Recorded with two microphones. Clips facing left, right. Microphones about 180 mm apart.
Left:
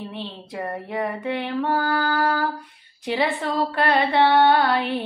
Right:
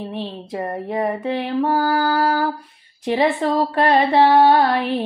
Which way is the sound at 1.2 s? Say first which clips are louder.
Right 4 dB; 30° right (ahead or behind).